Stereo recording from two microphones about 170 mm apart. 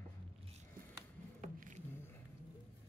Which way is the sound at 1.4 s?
45° right (ahead or behind).